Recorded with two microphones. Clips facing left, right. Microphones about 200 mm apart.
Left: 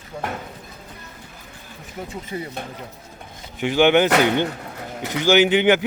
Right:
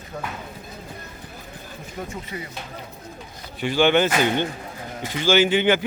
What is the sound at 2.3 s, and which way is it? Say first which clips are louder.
Speech: left 7 dB; 30° left (ahead or behind).